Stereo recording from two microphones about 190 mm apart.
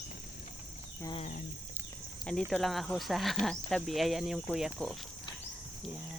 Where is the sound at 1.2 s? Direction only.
40° left (ahead or behind).